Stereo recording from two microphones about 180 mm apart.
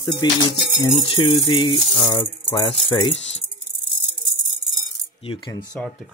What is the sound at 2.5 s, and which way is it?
Speech, 30° left (ahead or behind).